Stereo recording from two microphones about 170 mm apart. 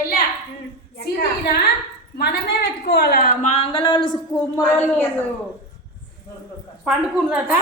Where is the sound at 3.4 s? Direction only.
35° left (ahead or behind).